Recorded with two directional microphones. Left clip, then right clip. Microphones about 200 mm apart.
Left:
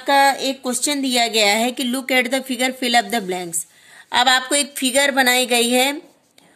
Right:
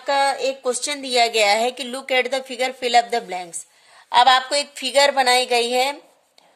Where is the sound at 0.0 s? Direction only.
10° right (ahead or behind).